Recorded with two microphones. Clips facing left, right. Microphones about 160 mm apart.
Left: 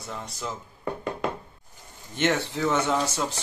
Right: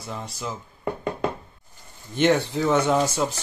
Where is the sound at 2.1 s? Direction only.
15° right (ahead or behind).